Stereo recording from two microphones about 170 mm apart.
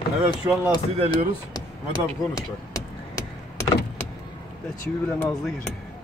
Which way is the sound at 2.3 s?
20° left (ahead or behind).